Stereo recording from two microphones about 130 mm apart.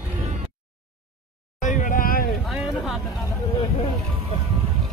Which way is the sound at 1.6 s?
80° left.